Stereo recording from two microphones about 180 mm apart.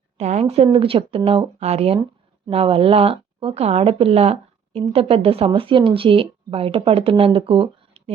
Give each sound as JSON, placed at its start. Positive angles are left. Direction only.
{"t": 0.2, "sound": "a woman's voice", "side_deg": -35}